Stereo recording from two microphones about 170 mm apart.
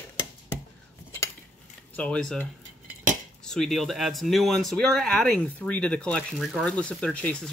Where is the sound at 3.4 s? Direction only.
Centre (ahead or behind).